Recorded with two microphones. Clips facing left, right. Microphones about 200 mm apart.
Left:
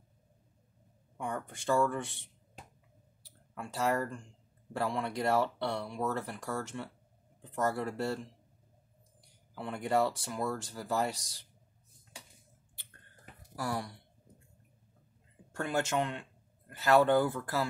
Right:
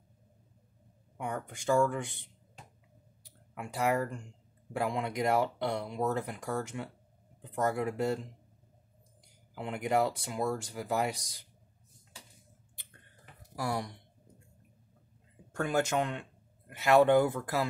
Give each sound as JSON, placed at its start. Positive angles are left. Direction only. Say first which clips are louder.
{"t": 1.1, "sound": "speech", "louder": "right 1 dB", "side_deg": -15}
{"t": 3.5, "sound": "speech", "louder": "right 1 dB", "side_deg": -15}
{"t": 9.6, "sound": "speech", "louder": "right 1 dB", "side_deg": -20}
{"t": 13.6, "sound": "speech", "louder": "right 2 dB", "side_deg": -10}
{"t": 15.6, "sound": "speech", "louder": "right 2 dB", "side_deg": -15}